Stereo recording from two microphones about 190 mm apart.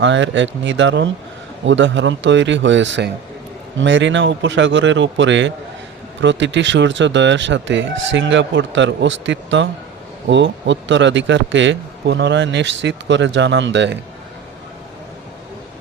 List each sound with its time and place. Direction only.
0.0 s a man's voice: 70° right (ahead or behind)